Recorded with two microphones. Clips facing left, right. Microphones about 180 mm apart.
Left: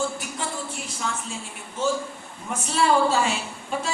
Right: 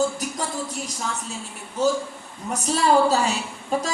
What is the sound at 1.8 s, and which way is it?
A woman's voice, 40° right (ahead or behind).